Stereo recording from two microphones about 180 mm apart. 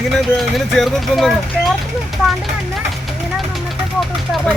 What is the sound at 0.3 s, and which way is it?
Speech, centre (ahead or behind).